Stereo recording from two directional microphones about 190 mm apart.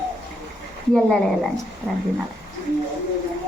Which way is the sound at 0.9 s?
Centre (ahead or behind).